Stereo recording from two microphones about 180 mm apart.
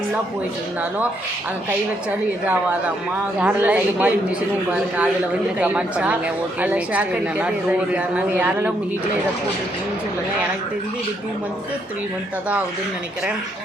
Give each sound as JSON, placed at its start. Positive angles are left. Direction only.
{"t": 2.4, "sound": "speech", "side_deg": -10}